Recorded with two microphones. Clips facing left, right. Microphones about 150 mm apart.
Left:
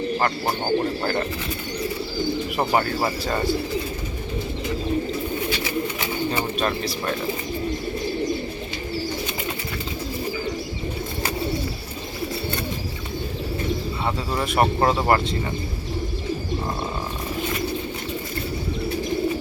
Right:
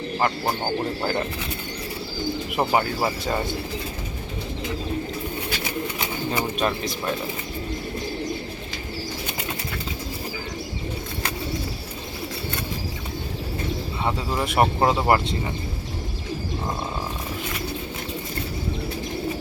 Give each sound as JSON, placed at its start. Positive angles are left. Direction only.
{"t": 0.2, "sound": "speech", "side_deg": -10}
{"t": 2.6, "sound": "speech", "side_deg": -15}
{"t": 6.3, "sound": "speech", "side_deg": -15}
{"t": 14.4, "sound": "speech", "side_deg": -20}